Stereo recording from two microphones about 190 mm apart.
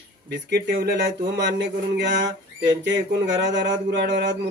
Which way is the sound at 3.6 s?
65° right (ahead or behind).